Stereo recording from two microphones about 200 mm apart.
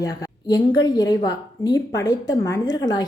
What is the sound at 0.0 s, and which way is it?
A woman's voice, 20° left (ahead or behind).